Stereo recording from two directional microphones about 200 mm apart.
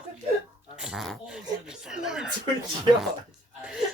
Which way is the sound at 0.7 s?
5° right (ahead or behind).